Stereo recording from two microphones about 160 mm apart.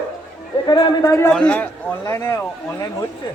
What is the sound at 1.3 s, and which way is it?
Speech, 5° left (ahead or behind).